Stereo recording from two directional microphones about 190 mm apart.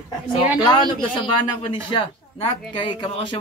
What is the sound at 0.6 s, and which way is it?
A man's voice, 25° left (ahead or behind).